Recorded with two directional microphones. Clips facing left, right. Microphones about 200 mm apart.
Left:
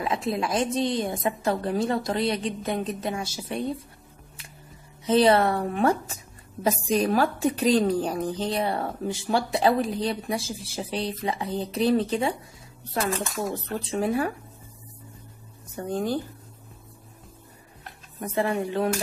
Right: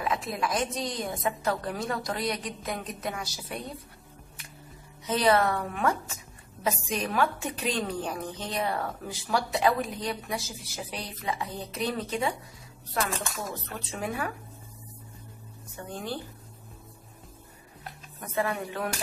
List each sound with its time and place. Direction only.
0.0 s a woman's voice: 25° left (ahead or behind)
5.0 s a woman's voice: 30° left (ahead or behind)
13.5 s a woman's voice: 30° left (ahead or behind)
15.7 s speech: 40° left (ahead or behind)
18.2 s a woman's voice: 30° left (ahead or behind)